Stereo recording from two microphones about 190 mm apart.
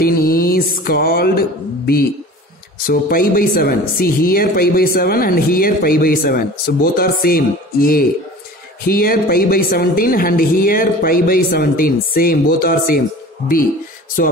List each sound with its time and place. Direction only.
0.0 s mantra: 50° left (ahead or behind)
2.9 s speech: 50° left (ahead or behind)